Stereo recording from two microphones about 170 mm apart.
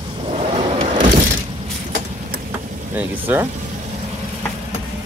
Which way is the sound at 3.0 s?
10° right (ahead or behind).